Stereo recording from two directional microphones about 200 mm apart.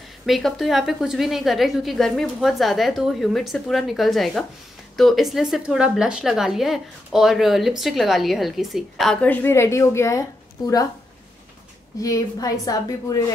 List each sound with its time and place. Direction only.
0.3 s a woman's voice: centre (ahead or behind)
12.0 s a woman's voice: 15° left (ahead or behind)